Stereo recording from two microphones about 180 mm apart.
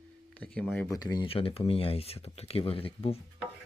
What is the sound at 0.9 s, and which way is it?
Speech, 20° left (ahead or behind).